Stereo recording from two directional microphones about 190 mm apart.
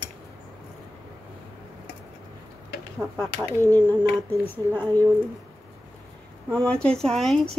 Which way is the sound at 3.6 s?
10° left (ahead or behind).